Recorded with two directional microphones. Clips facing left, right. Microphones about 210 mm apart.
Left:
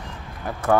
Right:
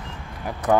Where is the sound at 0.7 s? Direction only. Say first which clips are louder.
Even; 15° right (ahead or behind).